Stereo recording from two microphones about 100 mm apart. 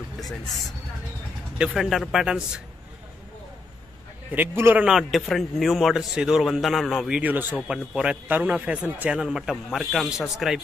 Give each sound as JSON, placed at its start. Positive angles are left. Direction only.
{"t": 0.2, "sound": "a man's voice", "side_deg": 0}
{"t": 4.3, "sound": "a man's voice", "side_deg": -20}
{"t": 4.8, "sound": "a man's voice", "side_deg": -5}
{"t": 7.2, "sound": "a man's voice", "side_deg": -15}